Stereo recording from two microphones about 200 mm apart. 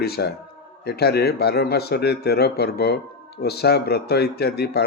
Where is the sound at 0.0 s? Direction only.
50° left (ahead or behind).